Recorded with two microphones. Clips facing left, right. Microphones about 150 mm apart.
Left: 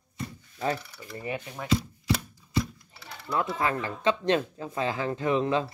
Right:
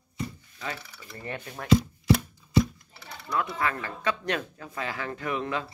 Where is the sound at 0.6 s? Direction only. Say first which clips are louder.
Left 7 dB; 35° left (ahead or behind).